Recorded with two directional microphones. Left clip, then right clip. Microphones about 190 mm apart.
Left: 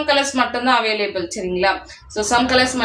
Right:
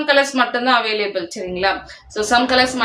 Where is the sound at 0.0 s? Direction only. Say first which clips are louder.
Right 2 dB; 20° right (ahead or behind).